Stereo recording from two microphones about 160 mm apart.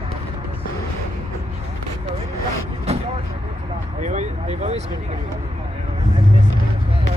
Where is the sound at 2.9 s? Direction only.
40° right (ahead or behind).